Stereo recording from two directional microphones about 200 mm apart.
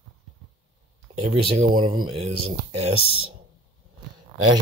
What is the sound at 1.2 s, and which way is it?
Speech, 30° right (ahead or behind).